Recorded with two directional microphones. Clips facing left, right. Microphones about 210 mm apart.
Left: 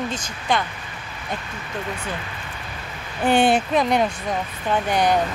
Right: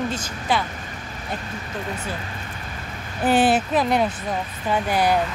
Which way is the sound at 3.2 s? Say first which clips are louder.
Left 1 dB; 5° right (ahead or behind).